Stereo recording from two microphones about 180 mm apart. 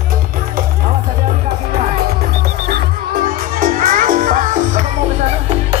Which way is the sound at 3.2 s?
50° right (ahead or behind).